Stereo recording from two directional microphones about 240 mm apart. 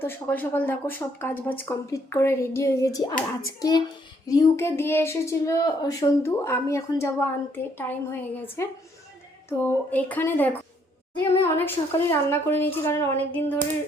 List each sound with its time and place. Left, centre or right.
0.0 s speech: centre